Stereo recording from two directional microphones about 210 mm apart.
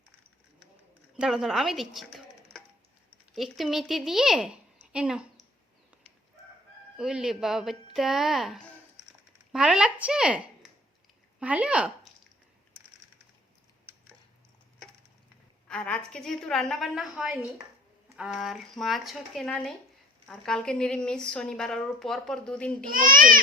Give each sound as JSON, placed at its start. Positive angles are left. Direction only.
{"t": 1.1, "sound": "a woman's voice", "side_deg": -5}
{"t": 6.9, "sound": "a woman's voice", "side_deg": -5}
{"t": 15.6, "sound": "a woman's voice", "side_deg": 5}
{"t": 22.9, "sound": "a child's voice", "side_deg": -40}